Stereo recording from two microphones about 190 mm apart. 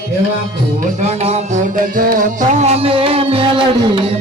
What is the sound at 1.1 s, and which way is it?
Music, 35° right (ahead or behind).